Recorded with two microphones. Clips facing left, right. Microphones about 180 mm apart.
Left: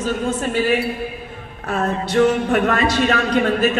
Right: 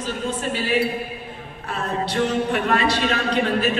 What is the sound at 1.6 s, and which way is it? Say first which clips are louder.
A man's voice: left 4 dB; 45° left (ahead or behind).